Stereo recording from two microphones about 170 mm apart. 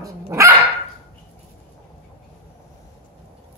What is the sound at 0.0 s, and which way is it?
Dog, 15° right (ahead or behind).